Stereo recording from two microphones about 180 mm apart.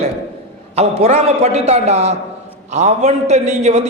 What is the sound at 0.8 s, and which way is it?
A man's voice, 35° right (ahead or behind).